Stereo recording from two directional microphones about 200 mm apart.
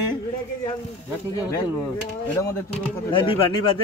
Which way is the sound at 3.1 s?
25° left (ahead or behind).